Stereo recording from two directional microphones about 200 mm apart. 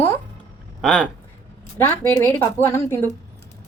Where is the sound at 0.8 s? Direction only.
5° right (ahead or behind).